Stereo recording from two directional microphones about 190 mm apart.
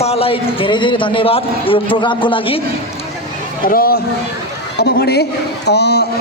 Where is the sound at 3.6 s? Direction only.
50° left (ahead or behind).